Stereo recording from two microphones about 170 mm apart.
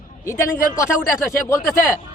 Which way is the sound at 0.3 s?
15° left (ahead or behind).